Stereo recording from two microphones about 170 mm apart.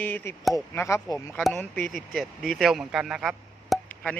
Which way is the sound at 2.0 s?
Centre (ahead or behind).